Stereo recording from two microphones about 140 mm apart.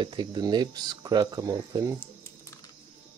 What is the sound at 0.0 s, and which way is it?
Speech, 35° right (ahead or behind).